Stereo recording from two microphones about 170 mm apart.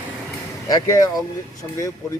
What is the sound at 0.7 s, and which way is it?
Speech, 20° left (ahead or behind).